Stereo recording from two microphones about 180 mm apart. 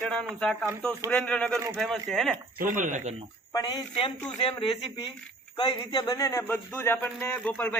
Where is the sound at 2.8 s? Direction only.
45° right (ahead or behind).